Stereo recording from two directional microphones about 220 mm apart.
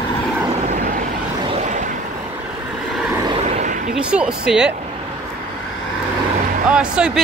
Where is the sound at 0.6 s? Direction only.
35° right (ahead or behind).